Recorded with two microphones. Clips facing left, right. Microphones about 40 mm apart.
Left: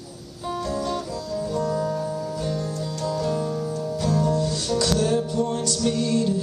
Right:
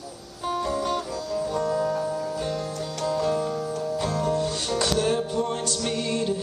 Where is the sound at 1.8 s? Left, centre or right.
Centre.